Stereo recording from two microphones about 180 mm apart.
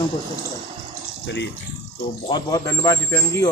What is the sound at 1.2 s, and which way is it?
Speech, 75° left (ahead or behind).